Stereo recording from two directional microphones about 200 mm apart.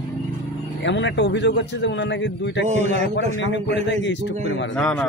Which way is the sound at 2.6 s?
40° right (ahead or behind).